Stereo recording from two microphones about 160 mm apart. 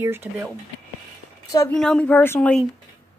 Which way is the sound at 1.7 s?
5° left (ahead or behind).